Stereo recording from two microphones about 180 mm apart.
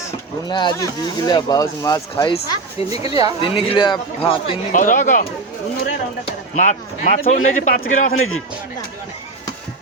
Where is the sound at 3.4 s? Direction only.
30° left (ahead or behind).